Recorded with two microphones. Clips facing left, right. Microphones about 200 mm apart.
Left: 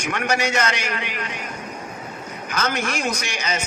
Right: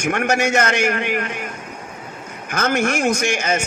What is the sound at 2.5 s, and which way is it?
Speech, 50° right (ahead or behind).